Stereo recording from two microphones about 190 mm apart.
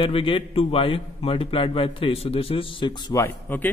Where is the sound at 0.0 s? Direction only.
30° left (ahead or behind).